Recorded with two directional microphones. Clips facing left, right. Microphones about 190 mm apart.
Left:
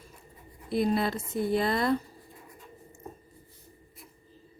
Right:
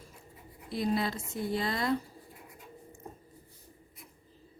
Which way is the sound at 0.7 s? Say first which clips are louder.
Left 4 dB; 55° left (ahead or behind).